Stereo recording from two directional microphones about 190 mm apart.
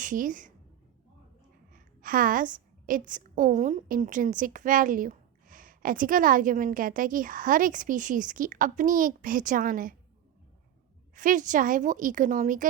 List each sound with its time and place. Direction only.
0.0 s a woman's voice: 45° right (ahead or behind)
1.7 s a sound: 45° right (ahead or behind)
3.1 s a woman's voice: 45° right (ahead or behind)
11.1 s a woman's voice: 45° right (ahead or behind)